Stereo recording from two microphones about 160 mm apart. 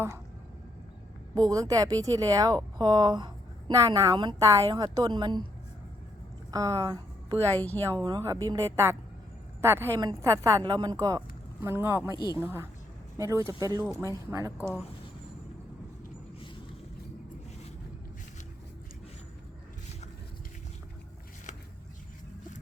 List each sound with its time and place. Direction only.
1.4 s speech: 25° right (ahead or behind)
6.5 s speech: 20° right (ahead or behind)
7.5 s a woman's voice: 10° left (ahead or behind)
8.0 s speech: 25° right (ahead or behind)
12.1 s speech: 25° left (ahead or behind)
12.4 s speech: 15° right (ahead or behind)